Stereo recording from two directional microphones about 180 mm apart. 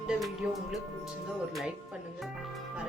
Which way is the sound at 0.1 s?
Centre (ahead or behind).